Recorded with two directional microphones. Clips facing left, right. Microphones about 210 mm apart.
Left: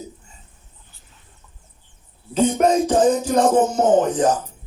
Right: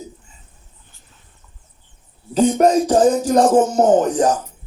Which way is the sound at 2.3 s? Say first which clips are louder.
Right 3 dB; 35° right (ahead or behind).